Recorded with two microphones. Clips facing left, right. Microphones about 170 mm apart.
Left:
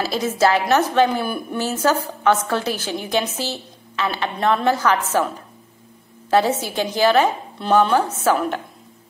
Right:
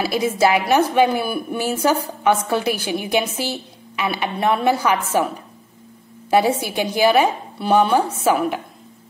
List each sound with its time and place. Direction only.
0.0 s a woman's voice: 10° right (ahead or behind)
6.3 s a woman's voice: 15° right (ahead or behind)